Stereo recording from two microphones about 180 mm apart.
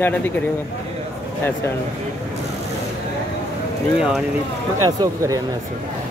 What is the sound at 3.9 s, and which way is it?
Speech, 5° right (ahead or behind).